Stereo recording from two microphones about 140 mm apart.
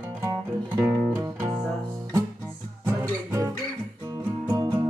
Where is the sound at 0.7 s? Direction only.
15° right (ahead or behind).